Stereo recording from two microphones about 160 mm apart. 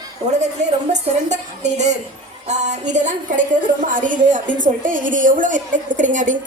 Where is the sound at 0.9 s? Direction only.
50° right (ahead or behind).